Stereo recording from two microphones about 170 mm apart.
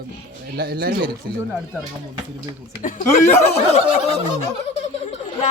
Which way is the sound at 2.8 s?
50° left (ahead or behind).